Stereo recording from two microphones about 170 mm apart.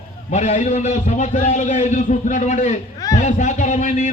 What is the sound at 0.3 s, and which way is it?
A man's voice, 40° left (ahead or behind).